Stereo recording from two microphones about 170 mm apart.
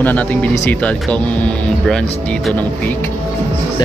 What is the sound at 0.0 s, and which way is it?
Speech, 10° left (ahead or behind).